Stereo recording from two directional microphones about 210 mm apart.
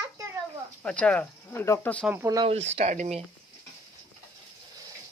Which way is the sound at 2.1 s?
15° right (ahead or behind).